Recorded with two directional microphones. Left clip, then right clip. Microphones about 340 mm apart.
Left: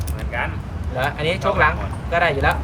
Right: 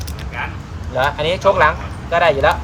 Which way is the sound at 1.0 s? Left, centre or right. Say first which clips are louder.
Right 6 dB; centre.